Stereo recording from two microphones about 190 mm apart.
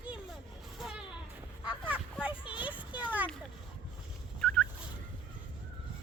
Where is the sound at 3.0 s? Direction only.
10° right (ahead or behind).